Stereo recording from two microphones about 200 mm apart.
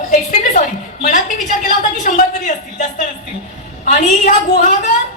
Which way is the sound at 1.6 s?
45° left (ahead or behind).